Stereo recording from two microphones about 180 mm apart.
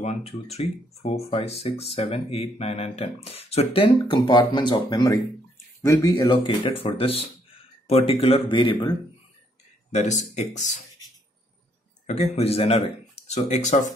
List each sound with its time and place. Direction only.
0.0 s speech: 35° left (ahead or behind)
9.8 s speech: 40° left (ahead or behind)
12.1 s speech: 35° left (ahead or behind)